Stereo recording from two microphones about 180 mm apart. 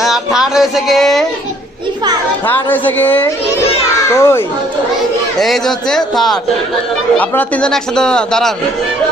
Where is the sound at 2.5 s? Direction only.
10° left (ahead or behind).